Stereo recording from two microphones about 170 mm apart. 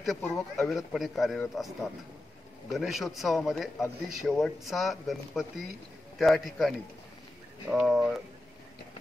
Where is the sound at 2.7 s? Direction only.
Centre (ahead or behind).